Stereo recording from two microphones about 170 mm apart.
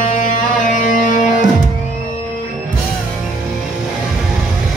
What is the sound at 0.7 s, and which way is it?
Music, 50° left (ahead or behind).